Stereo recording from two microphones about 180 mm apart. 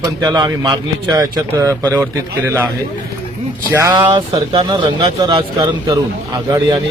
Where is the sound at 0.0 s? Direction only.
20° right (ahead or behind).